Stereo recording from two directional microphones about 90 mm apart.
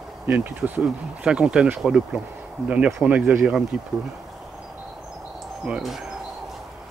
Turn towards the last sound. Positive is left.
turn(degrees=-5)  # may be behind; listen again after turning